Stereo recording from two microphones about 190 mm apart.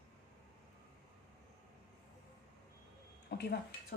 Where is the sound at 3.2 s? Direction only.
60° left (ahead or behind).